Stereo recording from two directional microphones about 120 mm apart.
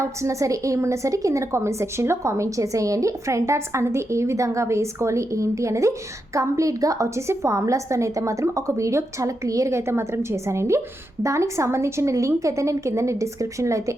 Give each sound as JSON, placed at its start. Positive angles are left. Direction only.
{"t": 0.0, "sound": "a woman's voice", "side_deg": -25}